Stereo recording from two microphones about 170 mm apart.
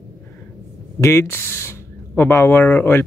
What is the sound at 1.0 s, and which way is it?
Speech, 15° left (ahead or behind).